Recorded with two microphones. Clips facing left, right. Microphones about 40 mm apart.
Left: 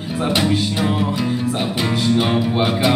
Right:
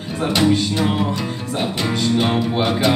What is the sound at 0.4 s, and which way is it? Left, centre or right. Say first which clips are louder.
Music: right 4 dB; centre.